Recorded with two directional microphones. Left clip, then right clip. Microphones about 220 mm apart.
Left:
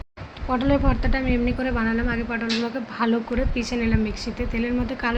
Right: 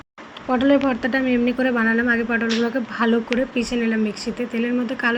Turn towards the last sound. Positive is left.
turn(degrees=-10)  # may be behind; listen again after turning